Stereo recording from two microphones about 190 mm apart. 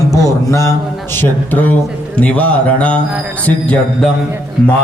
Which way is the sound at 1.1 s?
10° left (ahead or behind).